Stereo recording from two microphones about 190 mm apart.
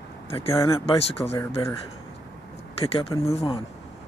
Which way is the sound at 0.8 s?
30° left (ahead or behind).